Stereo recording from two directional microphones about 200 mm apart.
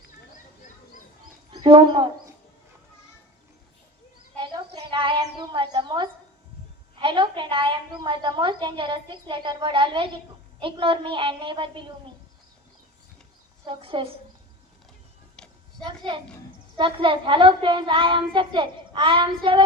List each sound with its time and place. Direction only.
1.5 s speech: 25° right (ahead or behind)
4.4 s a sound: 25° right (ahead or behind)
7.0 s a woman's voice: 25° right (ahead or behind)
13.7 s a woman's voice: 25° right (ahead or behind)
15.4 s a sound: 5° left (ahead or behind)
15.9 s a woman's voice: 25° right (ahead or behind)